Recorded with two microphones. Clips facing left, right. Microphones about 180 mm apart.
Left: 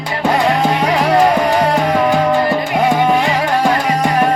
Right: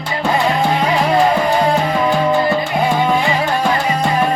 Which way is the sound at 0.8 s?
75° left (ahead or behind).